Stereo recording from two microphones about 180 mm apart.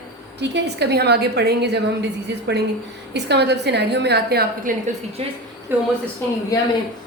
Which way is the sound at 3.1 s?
70° right (ahead or behind).